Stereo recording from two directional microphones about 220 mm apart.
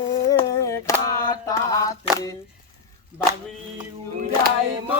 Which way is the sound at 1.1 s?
15° left (ahead or behind).